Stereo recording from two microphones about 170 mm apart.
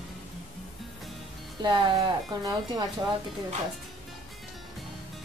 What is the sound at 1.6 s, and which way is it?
Speech, 25° right (ahead or behind).